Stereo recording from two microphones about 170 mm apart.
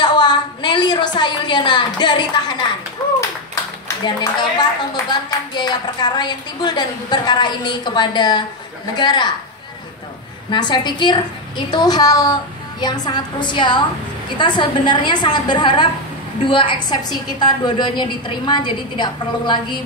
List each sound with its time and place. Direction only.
0.0 s a sound: 25° left (ahead or behind)
4.0 s a woman's voice: 25° left (ahead or behind)
10.5 s a woman's voice: 25° left (ahead or behind)